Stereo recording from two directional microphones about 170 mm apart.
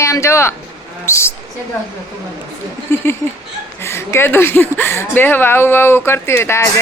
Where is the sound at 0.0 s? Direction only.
15° left (ahead or behind).